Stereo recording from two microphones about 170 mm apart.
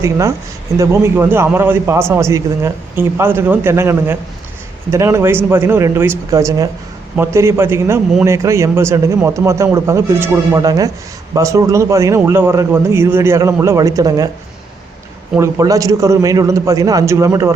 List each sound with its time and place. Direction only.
0.0 s a man's voice: 15° right (ahead or behind)
15.4 s a man's voice: 20° right (ahead or behind)